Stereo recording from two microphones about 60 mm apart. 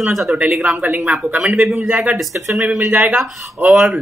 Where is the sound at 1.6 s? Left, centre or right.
Centre.